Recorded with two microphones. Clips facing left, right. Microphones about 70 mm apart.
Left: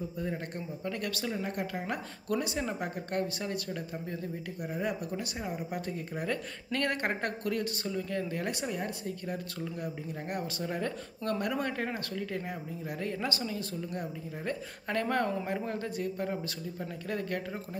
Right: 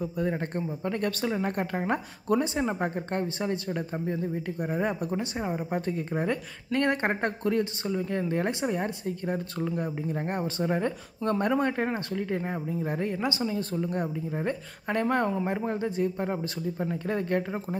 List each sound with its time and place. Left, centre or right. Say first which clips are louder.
0.6 s speech: right 6 dB; right
4.6 s speech: right 5 dB; right
5.1 s speech: right 6 dB; right
13.1 s speech: right 5 dB; centre
13.4 s speech: right 7 dB; right